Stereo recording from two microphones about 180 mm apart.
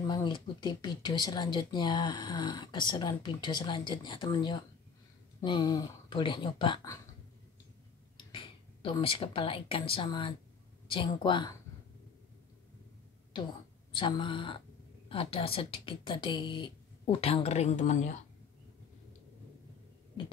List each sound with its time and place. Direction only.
0.0 s speech: 25° left (ahead or behind)
8.2 s speech: 30° left (ahead or behind)
13.9 s speech: 25° left (ahead or behind)